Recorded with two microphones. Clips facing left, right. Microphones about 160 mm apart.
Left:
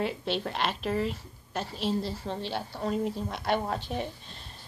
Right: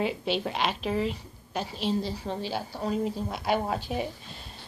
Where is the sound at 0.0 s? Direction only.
5° right (ahead or behind).